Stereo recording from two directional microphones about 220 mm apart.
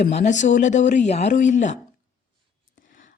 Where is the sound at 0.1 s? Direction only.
30° left (ahead or behind).